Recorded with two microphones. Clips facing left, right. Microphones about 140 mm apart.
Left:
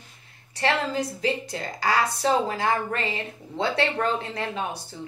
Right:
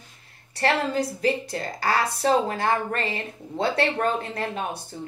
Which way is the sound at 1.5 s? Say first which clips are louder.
Even; 55° right (ahead or behind).